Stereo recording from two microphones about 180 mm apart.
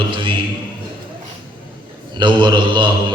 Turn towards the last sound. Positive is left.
turn(degrees=-25)  # may be behind; listen again after turning